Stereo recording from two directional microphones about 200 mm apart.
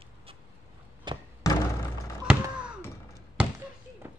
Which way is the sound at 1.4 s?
15° left (ahead or behind).